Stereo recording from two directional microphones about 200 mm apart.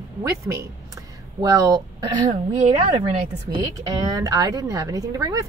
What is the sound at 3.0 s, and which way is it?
A woman's voice, 20° right (ahead or behind).